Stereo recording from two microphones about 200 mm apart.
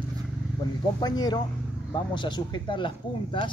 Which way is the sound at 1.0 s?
20° left (ahead or behind).